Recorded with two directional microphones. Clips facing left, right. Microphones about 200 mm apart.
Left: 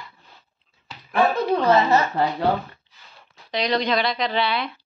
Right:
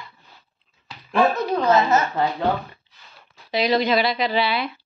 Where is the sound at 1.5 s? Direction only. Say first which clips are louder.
Even; 30° left (ahead or behind).